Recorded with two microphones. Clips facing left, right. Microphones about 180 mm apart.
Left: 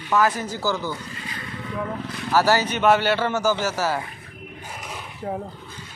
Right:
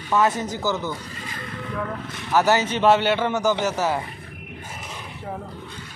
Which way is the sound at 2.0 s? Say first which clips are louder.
Even; 20° right (ahead or behind).